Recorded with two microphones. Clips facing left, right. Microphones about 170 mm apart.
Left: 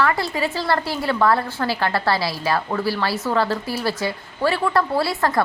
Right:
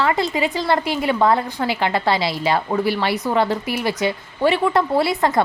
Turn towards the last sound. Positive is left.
turn(degrees=-20)  # may be behind; listen again after turning